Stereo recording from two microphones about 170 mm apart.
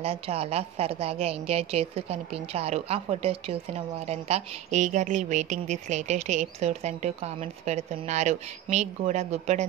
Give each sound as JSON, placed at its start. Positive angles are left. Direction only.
{"t": 0.0, "sound": "a woman's voice", "side_deg": -35}